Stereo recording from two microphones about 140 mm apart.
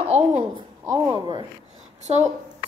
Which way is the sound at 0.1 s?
55° right (ahead or behind).